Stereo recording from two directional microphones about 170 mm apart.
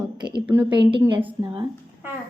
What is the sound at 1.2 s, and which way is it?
Speech, 10° right (ahead or behind).